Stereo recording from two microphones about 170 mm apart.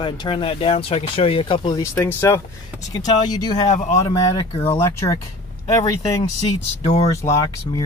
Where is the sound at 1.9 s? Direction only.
15° left (ahead or behind).